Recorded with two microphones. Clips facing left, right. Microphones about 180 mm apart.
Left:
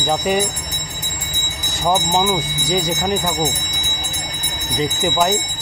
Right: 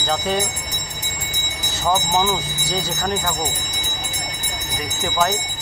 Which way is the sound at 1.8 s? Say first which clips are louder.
Left 2 dB; 15° left (ahead or behind).